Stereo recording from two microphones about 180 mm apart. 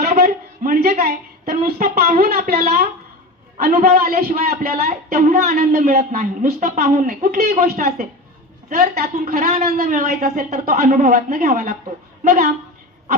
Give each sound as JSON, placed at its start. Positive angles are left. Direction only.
{"t": 0.2, "sound": "a woman's voice", "side_deg": -55}
{"t": 4.5, "sound": "a sound", "side_deg": -35}
{"t": 5.0, "sound": "a woman's voice", "side_deg": -50}